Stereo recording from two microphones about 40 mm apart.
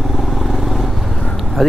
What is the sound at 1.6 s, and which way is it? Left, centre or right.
Speech, centre.